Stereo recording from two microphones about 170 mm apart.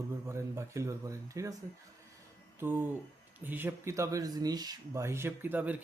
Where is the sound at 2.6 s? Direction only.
10° right (ahead or behind).